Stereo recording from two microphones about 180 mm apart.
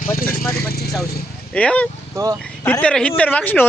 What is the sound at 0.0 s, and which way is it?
Speech, 50° left (ahead or behind).